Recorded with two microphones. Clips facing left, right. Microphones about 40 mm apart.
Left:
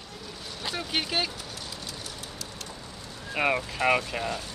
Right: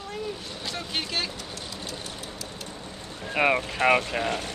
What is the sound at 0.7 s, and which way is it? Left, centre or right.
Speech, centre.